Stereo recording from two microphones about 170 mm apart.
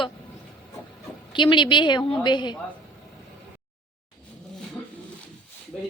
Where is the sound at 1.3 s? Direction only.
30° left (ahead or behind).